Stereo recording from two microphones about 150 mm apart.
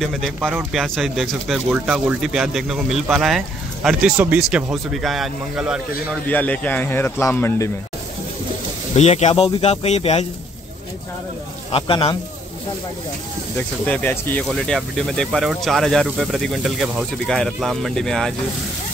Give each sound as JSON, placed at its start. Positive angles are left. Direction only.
{"t": 0.0, "sound": "speech", "side_deg": 0}
{"t": 6.2, "sound": "a man's voice", "side_deg": 10}
{"t": 8.9, "sound": "speech", "side_deg": 45}
{"t": 11.7, "sound": "speech", "side_deg": 35}
{"t": 13.6, "sound": "a man's voice", "side_deg": 10}